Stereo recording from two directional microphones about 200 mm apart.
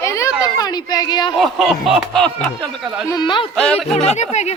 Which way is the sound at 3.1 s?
20° left (ahead or behind).